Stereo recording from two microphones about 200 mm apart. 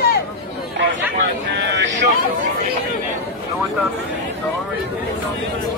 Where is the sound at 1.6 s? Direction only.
65° right (ahead or behind).